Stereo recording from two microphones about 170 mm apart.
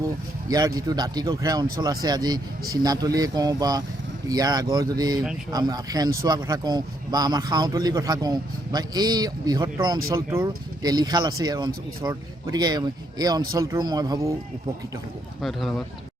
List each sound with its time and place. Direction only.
0.4 s speech: 25° right (ahead or behind)
15.4 s speech: centre (ahead or behind)